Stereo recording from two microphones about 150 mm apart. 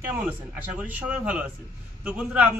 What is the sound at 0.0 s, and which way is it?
A man's voice, 10° right (ahead or behind).